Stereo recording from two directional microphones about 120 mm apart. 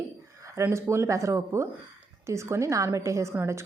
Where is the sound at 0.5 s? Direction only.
20° right (ahead or behind).